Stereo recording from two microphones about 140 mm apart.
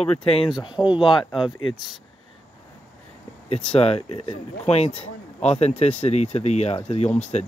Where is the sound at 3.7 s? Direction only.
45° left (ahead or behind).